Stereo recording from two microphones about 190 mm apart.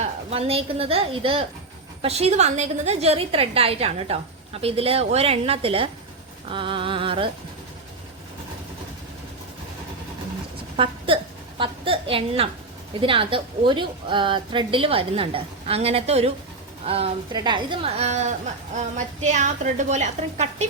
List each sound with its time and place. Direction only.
0.0 s a woman's voice: 30° right (ahead or behind)
10.8 s a sound: 30° right (ahead or behind)
13.0 s a woman's voice: 30° right (ahead or behind)